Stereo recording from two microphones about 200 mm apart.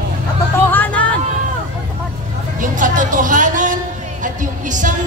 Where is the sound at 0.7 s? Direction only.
10° left (ahead or behind).